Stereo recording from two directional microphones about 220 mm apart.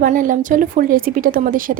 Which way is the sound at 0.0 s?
35° right (ahead or behind).